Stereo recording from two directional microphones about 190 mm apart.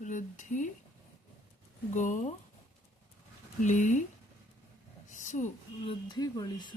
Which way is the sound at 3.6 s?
40° left (ahead or behind).